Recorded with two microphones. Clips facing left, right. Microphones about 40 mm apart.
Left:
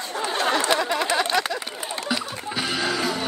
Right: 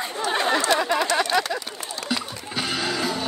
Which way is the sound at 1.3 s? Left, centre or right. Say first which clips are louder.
Right 1 dB; left.